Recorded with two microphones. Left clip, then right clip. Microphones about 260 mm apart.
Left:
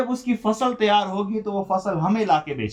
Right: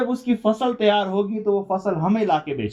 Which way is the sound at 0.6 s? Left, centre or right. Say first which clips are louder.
Left 2 dB; centre.